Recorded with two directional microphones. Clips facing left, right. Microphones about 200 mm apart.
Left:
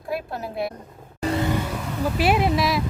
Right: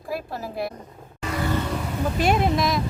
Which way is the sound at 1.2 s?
35° left (ahead or behind).